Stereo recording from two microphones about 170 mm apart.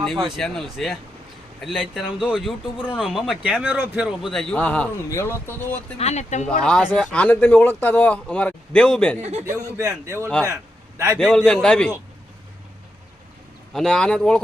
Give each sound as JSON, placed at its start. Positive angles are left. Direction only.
{"t": 0.0, "sound": "a man's voice", "side_deg": 0}
{"t": 6.0, "sound": "speech", "side_deg": 40}
{"t": 6.6, "sound": "a man's voice", "side_deg": 5}
{"t": 9.5, "sound": "a man's voice", "side_deg": -15}
{"t": 11.2, "sound": "a man's voice", "side_deg": 0}
{"t": 13.7, "sound": "a man's voice", "side_deg": 5}